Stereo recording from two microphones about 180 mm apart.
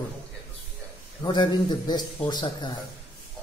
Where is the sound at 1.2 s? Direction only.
25° left (ahead or behind).